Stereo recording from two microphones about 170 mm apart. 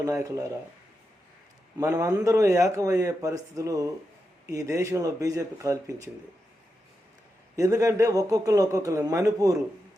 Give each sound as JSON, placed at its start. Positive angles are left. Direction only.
{"t": 0.0, "sound": "a man's voice", "side_deg": -20}
{"t": 1.8, "sound": "a man's voice", "side_deg": -20}
{"t": 7.5, "sound": "a man's voice", "side_deg": -20}